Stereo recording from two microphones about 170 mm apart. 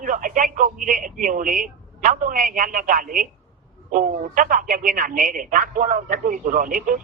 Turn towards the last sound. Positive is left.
turn(degrees=-55)  # may be behind; listen again after turning